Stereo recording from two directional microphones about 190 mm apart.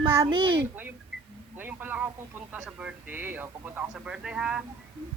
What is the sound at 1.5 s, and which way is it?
A man's voice, 10° right (ahead or behind).